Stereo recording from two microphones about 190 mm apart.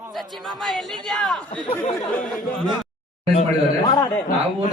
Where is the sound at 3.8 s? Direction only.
25° left (ahead or behind).